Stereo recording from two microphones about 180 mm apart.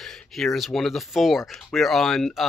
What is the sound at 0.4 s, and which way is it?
Speech, centre (ahead or behind).